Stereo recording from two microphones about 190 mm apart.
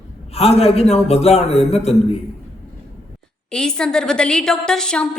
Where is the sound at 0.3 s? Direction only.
30° left (ahead or behind).